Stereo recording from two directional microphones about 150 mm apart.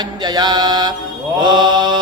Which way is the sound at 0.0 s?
25° right (ahead or behind).